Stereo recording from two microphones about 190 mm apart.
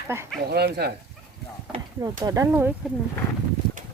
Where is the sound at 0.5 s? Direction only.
60° right (ahead or behind).